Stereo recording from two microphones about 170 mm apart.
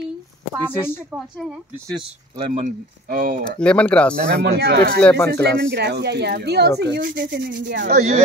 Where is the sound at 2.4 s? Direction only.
40° right (ahead or behind).